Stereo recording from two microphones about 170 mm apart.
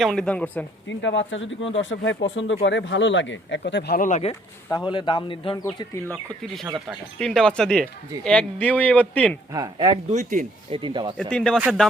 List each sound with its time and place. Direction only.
0.0 s speech: 5° left (ahead or behind)
0.9 s speech: 90° left
4.0 s speech: 40° left (ahead or behind)
4.7 s speech: 30° left (ahead or behind)
5.9 s speech: 10° left (ahead or behind)
9.5 s speech: 20° right (ahead or behind)
10.1 s speech: 45° right (ahead or behind)
10.7 s speech: 30° right (ahead or behind)
11.2 s speech: 5° left (ahead or behind)